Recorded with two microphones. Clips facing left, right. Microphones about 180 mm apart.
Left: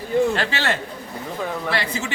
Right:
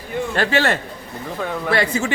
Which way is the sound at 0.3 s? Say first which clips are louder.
Right 5 dB; 50° right (ahead or behind).